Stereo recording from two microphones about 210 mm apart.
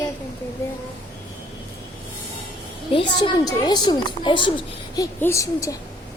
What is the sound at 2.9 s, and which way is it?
A woman's voice, 20° left (ahead or behind).